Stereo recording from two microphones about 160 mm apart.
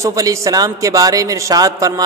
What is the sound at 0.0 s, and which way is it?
A man's voice, 20° right (ahead or behind).